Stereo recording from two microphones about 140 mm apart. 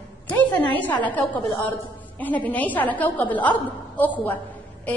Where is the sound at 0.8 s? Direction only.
10° left (ahead or behind).